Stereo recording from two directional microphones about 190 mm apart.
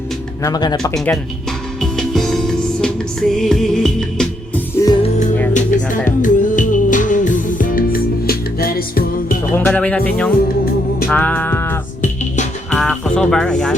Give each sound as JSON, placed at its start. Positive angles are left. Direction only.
{"t": 0.4, "sound": "speech", "side_deg": 20}
{"t": 0.9, "sound": "music", "side_deg": 0}
{"t": 4.7, "sound": "music", "side_deg": 15}
{"t": 5.5, "sound": "music", "side_deg": 40}
{"t": 9.6, "sound": "speech", "side_deg": 10}
{"t": 11.1, "sound": "music", "side_deg": 10}
{"t": 12.0, "sound": "music", "side_deg": 40}
{"t": 12.7, "sound": "speech", "side_deg": 5}